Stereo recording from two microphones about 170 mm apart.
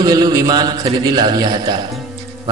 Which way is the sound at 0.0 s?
25° right (ahead or behind).